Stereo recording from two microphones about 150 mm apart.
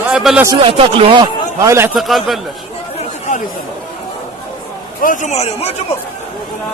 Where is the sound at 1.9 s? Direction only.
Centre (ahead or behind).